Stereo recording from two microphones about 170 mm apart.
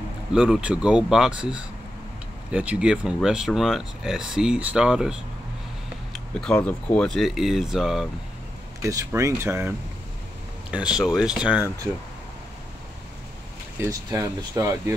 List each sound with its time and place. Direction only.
0.3 s speech: 5° right (ahead or behind)
6.1 s speech: 5° left (ahead or behind)
8.8 s speech: 15° right (ahead or behind)
13.7 s speech: 15° right (ahead or behind)